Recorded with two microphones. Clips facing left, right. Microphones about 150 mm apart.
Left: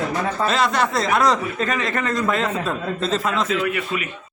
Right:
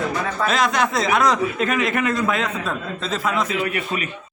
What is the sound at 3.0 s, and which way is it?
Speech, 10° right (ahead or behind).